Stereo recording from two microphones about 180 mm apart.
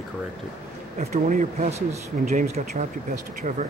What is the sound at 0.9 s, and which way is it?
Speech, 45° right (ahead or behind).